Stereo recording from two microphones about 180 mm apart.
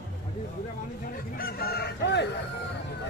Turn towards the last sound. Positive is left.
turn(degrees=65)  # may be behind; listen again after turning